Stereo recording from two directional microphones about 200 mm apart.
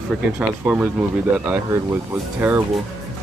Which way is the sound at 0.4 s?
5° right (ahead or behind).